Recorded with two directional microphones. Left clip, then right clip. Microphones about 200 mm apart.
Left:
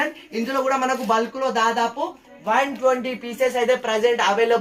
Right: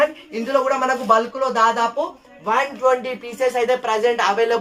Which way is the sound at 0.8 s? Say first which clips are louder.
Right 4 dB; 20° right (ahead or behind).